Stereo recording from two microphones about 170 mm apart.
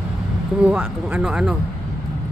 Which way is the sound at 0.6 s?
10° right (ahead or behind).